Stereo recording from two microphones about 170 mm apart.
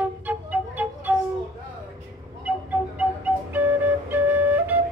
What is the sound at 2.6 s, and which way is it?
Flute, 10° right (ahead or behind).